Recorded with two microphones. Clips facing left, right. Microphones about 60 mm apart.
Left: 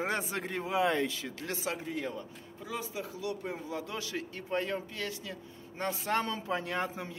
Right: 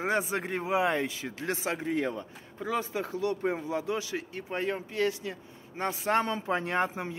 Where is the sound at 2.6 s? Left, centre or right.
Right.